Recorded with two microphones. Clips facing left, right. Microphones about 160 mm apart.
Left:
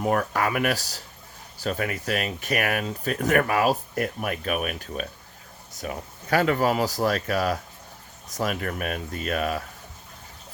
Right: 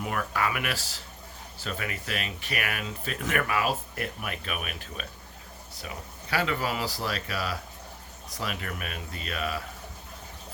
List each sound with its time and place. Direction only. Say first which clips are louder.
0.0 s speech: left 6 dB; 40° left (ahead or behind)